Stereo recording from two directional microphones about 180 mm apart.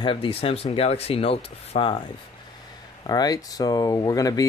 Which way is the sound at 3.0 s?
20° left (ahead or behind).